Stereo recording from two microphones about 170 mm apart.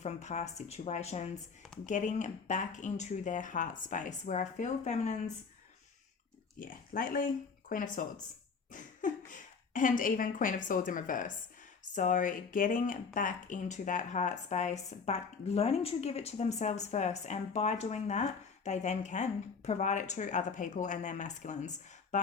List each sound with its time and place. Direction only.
0.0 s speech: 40° left (ahead or behind)
6.6 s speech: 55° left (ahead or behind)
22.1 s a sound: 45° left (ahead or behind)